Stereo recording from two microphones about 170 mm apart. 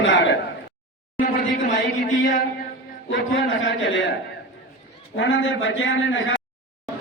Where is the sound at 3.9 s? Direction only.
90° left.